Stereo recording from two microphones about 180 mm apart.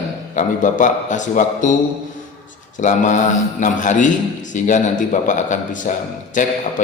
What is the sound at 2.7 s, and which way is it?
A man's voice, 45° left (ahead or behind).